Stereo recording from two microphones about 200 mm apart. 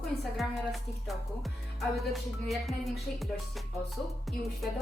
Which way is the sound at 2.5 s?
Centre (ahead or behind).